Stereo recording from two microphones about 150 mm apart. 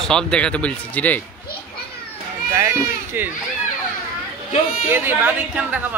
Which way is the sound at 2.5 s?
15° right (ahead or behind).